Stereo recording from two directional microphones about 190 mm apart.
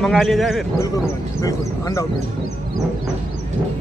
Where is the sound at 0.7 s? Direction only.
20° left (ahead or behind).